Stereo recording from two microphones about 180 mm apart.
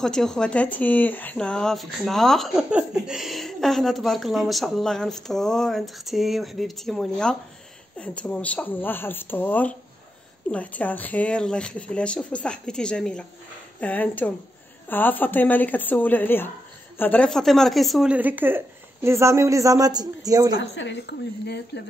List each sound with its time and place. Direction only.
0.0 s speech: 5° left (ahead or behind); by 20.5 s 20° right (ahead or behind)
20.5 s speech: 90° left; by 21.8 s 70° left (ahead or behind)